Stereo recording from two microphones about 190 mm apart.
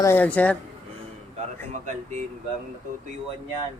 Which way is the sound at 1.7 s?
40° right (ahead or behind).